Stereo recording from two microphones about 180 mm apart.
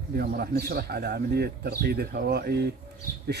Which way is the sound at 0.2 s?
60° right (ahead or behind).